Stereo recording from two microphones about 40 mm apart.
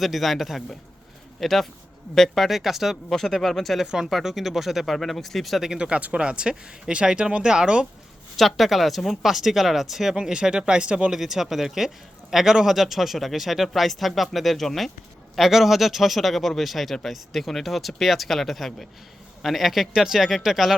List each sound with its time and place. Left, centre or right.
0.0 s a man's voice: centre
3.1 s speech: centre
3.8 s a man's voice: centre
4.9 s a man's voice: centre
5.6 s speech: right
8.4 s a man's voice: centre
10.2 s speech: right
11.1 s a man's voice: centre
15.4 s a man's voice: centre